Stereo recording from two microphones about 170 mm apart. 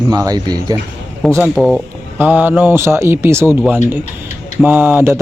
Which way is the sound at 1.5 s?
Centre (ahead or behind).